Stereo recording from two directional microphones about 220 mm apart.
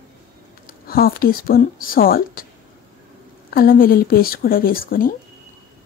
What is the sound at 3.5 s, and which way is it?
Speech, 40° left (ahead or behind).